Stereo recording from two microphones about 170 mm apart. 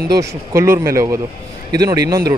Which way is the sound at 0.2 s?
15° right (ahead or behind).